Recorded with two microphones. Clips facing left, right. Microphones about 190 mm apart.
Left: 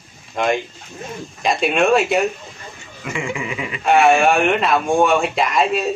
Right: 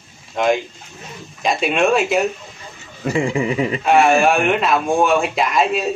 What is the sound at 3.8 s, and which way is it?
Speech, centre (ahead or behind).